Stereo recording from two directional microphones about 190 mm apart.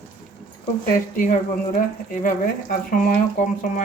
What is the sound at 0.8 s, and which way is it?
Speech, 45° left (ahead or behind).